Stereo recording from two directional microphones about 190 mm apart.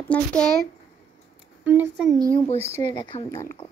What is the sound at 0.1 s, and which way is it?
Speech, 5° left (ahead or behind).